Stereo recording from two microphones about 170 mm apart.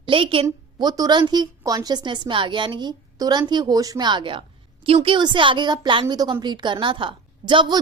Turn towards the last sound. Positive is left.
turn(degrees=-25)  # may be behind; listen again after turning